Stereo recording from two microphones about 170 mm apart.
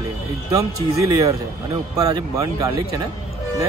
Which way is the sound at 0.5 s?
20° right (ahead or behind).